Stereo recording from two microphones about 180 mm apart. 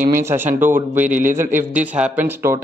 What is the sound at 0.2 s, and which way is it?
Speech, 15° right (ahead or behind).